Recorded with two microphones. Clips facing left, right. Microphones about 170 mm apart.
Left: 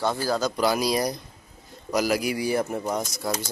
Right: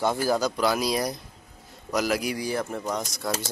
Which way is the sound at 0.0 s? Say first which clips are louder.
Right 1 dB; 20° right (ahead or behind).